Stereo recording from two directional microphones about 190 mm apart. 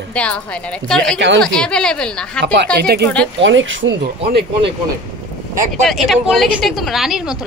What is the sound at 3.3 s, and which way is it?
Speech, 80° right.